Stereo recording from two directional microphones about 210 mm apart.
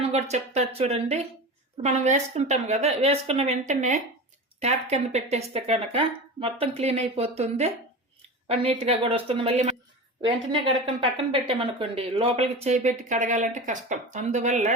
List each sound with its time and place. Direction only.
0.0 s speech: 30° right (ahead or behind)